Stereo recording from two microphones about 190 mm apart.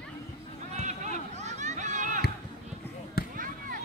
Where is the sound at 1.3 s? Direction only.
35° right (ahead or behind).